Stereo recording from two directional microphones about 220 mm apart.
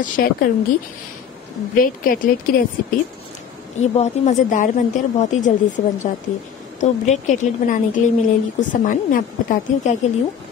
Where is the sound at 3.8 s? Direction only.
30° left (ahead or behind).